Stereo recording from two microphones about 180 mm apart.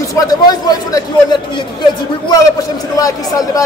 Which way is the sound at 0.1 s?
20° left (ahead or behind).